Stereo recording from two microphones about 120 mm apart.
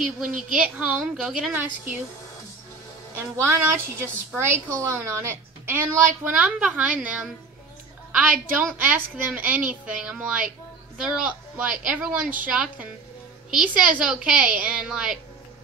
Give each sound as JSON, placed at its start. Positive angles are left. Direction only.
{"t": 0.6, "sound": "a woman's voice", "side_deg": -10}
{"t": 3.2, "sound": "a woman's voice", "side_deg": -20}